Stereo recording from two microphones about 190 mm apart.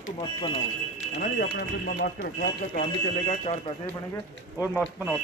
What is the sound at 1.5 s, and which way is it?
Speech, 55° left (ahead or behind).